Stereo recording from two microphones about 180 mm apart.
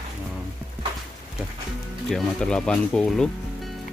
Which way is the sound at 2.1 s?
5° left (ahead or behind).